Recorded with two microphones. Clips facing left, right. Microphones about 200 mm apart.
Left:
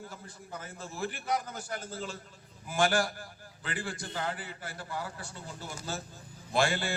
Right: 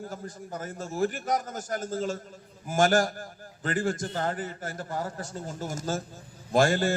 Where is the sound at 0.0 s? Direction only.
45° right (ahead or behind).